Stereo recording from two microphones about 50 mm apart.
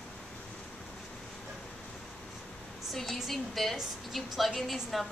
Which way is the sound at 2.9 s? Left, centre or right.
Centre.